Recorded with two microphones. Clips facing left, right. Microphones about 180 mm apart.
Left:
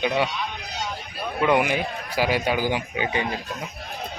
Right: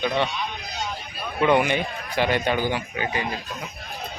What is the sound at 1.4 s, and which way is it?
A man's voice, centre (ahead or behind).